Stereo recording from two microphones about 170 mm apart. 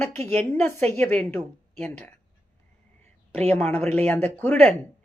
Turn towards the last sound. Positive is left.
turn(degrees=10)  # may be behind; listen again after turning